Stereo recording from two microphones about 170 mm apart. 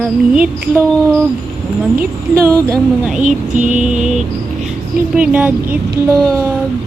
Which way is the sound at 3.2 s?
45° right (ahead or behind).